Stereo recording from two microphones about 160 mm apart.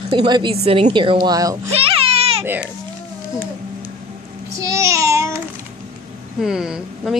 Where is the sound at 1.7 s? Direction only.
35° right (ahead or behind).